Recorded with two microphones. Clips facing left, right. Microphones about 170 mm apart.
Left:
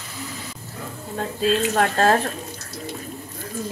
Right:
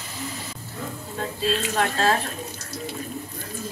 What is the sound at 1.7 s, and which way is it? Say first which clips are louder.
Speech: left 2 dB; 50° left (ahead or behind).